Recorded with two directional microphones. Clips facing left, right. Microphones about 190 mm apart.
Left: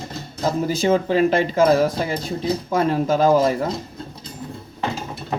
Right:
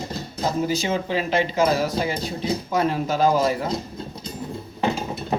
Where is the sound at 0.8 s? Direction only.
50° left (ahead or behind).